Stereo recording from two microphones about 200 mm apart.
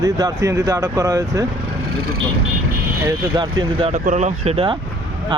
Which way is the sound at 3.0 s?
20° right (ahead or behind).